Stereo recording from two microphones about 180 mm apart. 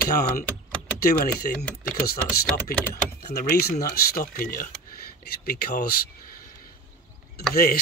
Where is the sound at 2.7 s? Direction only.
55° left (ahead or behind).